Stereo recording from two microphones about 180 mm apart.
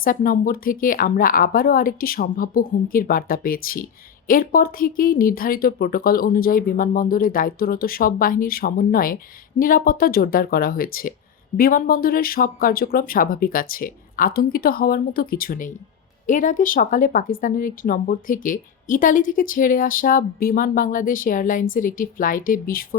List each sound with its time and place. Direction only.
0.0 s speech: 50° left (ahead or behind)